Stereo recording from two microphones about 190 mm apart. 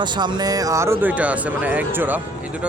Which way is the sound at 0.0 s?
25° right (ahead or behind).